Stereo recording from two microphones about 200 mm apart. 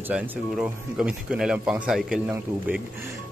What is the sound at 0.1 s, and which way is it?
Speech, 5° right (ahead or behind).